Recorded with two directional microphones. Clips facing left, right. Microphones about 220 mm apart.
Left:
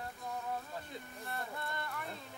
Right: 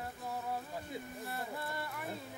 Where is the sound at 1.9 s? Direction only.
15° right (ahead or behind).